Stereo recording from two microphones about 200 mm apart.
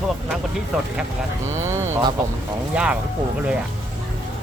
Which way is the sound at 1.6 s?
15° right (ahead or behind).